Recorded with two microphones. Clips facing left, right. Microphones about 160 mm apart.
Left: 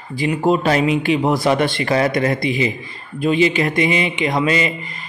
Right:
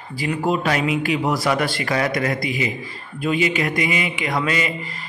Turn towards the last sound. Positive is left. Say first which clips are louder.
# left 4 dB
turn(degrees=25)  # may be behind; listen again after turning